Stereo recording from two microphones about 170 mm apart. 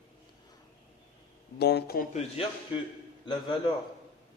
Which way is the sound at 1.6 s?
75° left (ahead or behind).